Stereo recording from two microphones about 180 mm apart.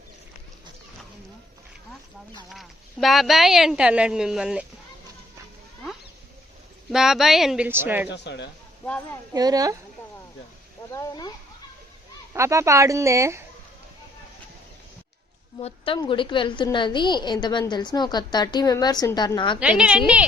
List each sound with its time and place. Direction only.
2.5 s speech: centre (ahead or behind)
6.9 s speech: centre (ahead or behind)
8.1 s speech: 75° left (ahead or behind)
8.8 s speech: 10° left (ahead or behind)
9.3 s a woman's voice: 20° right (ahead or behind)
10.9 s a woman's voice: 20° left (ahead or behind)
12.3 s speech: 15° right (ahead or behind)
15.6 s a woman's voice: 30° left (ahead or behind)
19.5 s speech: 5° right (ahead or behind)